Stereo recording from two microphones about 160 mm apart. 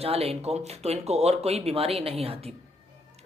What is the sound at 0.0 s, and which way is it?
Speech, 40° right (ahead or behind).